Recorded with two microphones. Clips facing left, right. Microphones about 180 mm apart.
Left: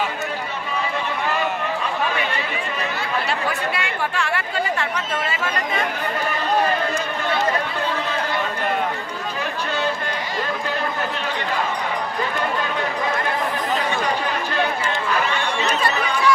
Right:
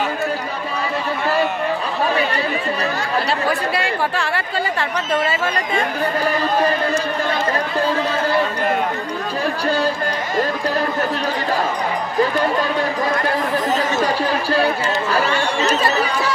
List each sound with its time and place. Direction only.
3.4 s chatter: 35° right (ahead or behind)
14.0 s chatter: 35° right (ahead or behind)